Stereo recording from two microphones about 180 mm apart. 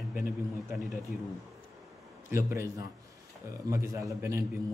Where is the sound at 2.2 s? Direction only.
15° right (ahead or behind).